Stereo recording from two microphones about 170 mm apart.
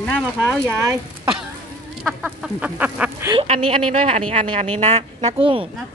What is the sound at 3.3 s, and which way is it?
Speech, 45° right (ahead or behind).